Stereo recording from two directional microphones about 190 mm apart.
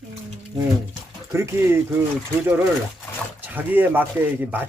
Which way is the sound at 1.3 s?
15° right (ahead or behind).